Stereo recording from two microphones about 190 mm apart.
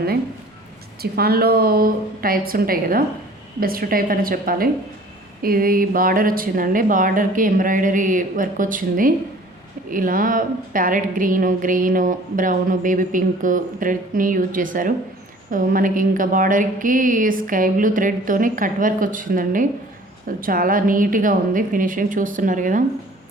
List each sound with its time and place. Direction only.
1.1 s a woman's voice: 55° right (ahead or behind)